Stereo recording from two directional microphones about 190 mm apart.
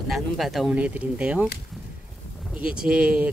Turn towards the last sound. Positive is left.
turn(degrees=-5)  # may be behind; listen again after turning